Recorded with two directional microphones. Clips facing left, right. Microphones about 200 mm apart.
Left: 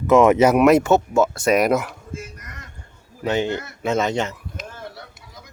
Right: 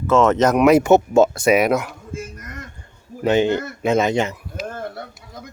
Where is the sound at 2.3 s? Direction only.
50° right (ahead or behind).